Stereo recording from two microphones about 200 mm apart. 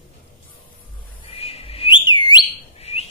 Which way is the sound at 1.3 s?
30° left (ahead or behind).